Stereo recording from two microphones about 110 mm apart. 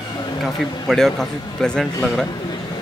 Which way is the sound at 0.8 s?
Centre (ahead or behind).